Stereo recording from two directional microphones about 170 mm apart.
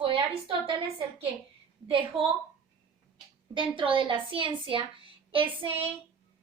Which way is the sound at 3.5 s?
30° right (ahead or behind).